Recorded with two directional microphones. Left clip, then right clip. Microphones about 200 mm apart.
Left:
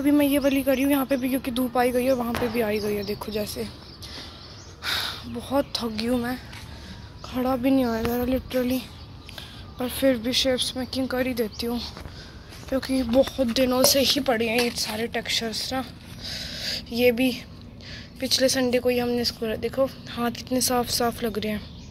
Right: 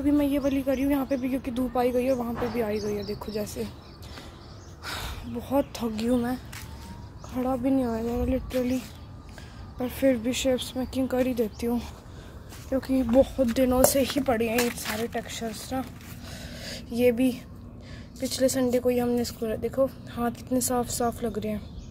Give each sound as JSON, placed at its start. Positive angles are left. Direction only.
{"t": 0.0, "sound": "speech", "side_deg": 5}
{"t": 4.8, "sound": "a sound", "side_deg": -10}
{"t": 5.5, "sound": "a woman's voice", "side_deg": -20}
{"t": 7.3, "sound": "a woman's voice", "side_deg": 5}
{"t": 12.7, "sound": "speech", "side_deg": -10}
{"t": 15.1, "sound": "a sound", "side_deg": -5}
{"t": 18.2, "sound": "speech", "side_deg": -10}